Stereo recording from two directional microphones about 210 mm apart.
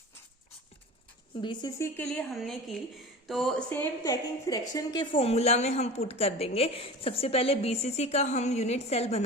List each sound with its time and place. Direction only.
1.4 s a woman's voice: 20° left (ahead or behind)
2.0 s a woman's voice: 5° left (ahead or behind); by 9.2 s 30° left (ahead or behind)